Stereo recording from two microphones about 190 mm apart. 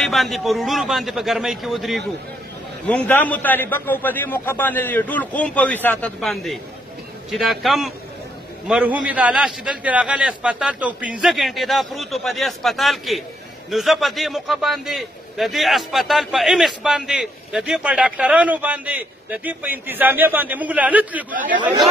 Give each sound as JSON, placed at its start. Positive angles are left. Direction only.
{"t": 0.0, "sound": "a man's voice", "side_deg": 0}
{"t": 21.3, "sound": "speech", "side_deg": -45}